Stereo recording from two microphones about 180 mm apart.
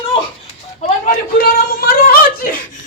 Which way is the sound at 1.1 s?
55° left (ahead or behind).